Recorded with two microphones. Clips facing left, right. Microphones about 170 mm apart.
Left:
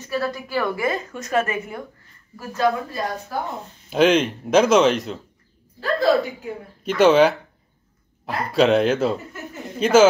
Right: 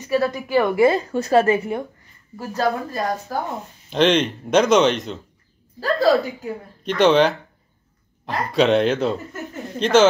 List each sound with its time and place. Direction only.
0.1 s a woman's voice: 20° right (ahead or behind)
0.8 s a woman's voice: 30° right (ahead or behind)
3.3 s speech: 40° right (ahead or behind)
3.9 s a man's voice: 5° left (ahead or behind)
5.8 s speech: 40° right (ahead or behind)
6.8 s a man's voice: 5° left (ahead or behind)